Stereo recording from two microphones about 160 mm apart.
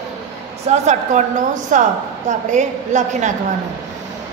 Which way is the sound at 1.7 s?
55° right (ahead or behind).